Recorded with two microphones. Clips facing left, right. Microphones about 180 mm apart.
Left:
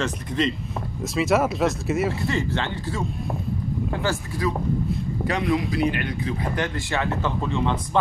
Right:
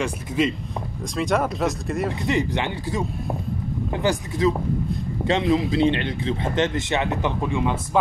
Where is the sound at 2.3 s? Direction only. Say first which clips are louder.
Right 2 dB; 15° right (ahead or behind).